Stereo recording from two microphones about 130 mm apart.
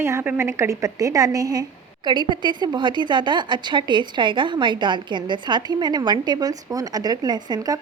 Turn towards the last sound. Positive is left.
turn(degrees=-30)  # may be behind; listen again after turning